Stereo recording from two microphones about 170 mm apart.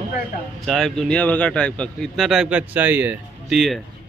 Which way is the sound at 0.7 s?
Centre (ahead or behind).